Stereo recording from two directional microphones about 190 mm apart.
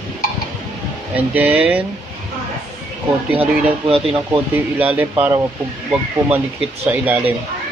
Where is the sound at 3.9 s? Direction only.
30° right (ahead or behind).